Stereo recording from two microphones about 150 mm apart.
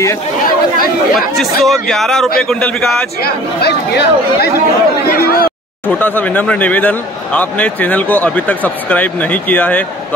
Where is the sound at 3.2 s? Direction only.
90° left.